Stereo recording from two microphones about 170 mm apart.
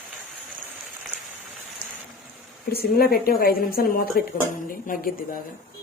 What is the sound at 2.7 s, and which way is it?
Speech, 65° left (ahead or behind).